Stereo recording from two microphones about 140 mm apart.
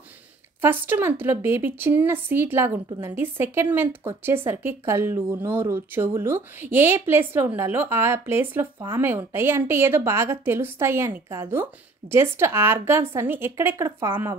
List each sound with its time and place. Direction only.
0.6 s speech: 15° right (ahead or behind)